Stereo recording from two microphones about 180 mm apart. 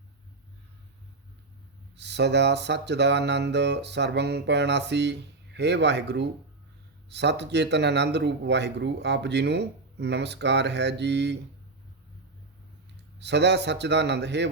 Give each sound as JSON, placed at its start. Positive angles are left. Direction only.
{"t": 2.0, "sound": "speech", "side_deg": -70}
{"t": 13.1, "sound": "speech", "side_deg": -70}